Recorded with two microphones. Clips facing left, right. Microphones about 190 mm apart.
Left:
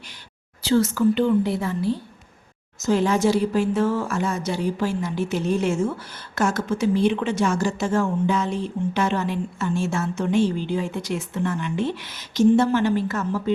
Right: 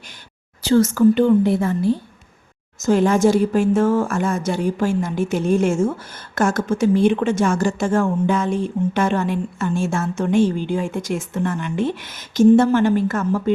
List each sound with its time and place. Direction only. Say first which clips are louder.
0.6 s speech: right 5 dB; 45° right (ahead or behind)